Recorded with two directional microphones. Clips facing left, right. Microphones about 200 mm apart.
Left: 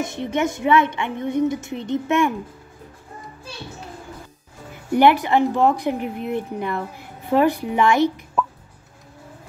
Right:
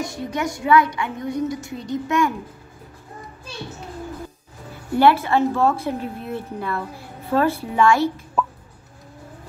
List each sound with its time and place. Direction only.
0.0 s speech: 25° left (ahead or behind)
4.9 s a woman's voice: 15° left (ahead or behind)
8.4 s a sound: centre (ahead or behind)